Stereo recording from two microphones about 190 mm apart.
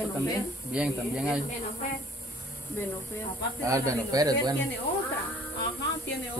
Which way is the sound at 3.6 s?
15° right (ahead or behind).